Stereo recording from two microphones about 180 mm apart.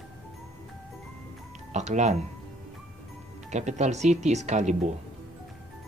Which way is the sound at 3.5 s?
40° right (ahead or behind).